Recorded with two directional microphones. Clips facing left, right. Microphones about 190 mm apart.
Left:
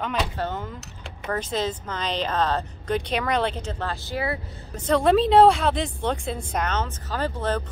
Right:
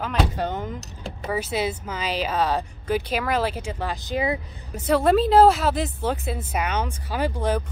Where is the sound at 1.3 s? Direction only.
10° right (ahead or behind).